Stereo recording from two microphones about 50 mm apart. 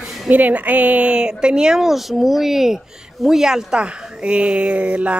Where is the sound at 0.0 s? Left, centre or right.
Centre.